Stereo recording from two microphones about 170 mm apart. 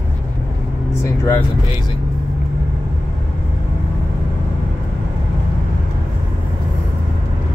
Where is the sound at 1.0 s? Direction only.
15° left (ahead or behind).